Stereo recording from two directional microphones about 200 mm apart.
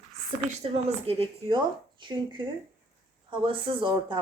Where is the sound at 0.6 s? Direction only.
30° right (ahead or behind).